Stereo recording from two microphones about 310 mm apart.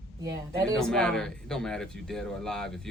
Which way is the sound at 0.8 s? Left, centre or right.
Centre.